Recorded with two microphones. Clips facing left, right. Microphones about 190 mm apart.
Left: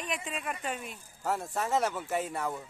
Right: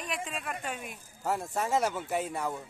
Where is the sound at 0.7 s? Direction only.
5° right (ahead or behind).